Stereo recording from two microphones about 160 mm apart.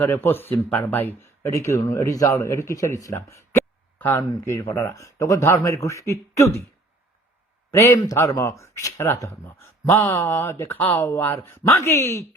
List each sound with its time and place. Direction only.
0.0 s speech: 15° left (ahead or behind)
7.7 s speech: 20° left (ahead or behind)